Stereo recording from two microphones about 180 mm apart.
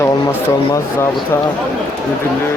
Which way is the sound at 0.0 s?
15° left (ahead or behind).